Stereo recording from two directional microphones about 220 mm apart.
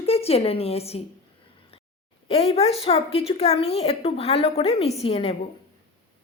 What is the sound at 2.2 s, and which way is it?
A woman's voice, 25° left (ahead or behind).